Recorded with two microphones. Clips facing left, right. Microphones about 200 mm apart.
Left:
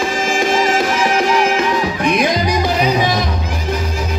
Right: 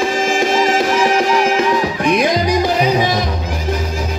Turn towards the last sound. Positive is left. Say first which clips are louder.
# right 1 dB
turn(degrees=-40)  # may be behind; listen again after turning